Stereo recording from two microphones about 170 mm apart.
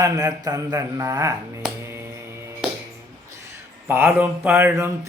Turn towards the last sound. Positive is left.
turn(degrees=-15)  # may be behind; listen again after turning